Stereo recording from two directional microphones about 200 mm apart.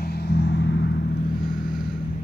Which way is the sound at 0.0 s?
55° left (ahead or behind).